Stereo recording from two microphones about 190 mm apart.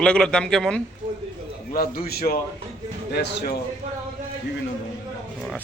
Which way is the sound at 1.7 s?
55° left (ahead or behind).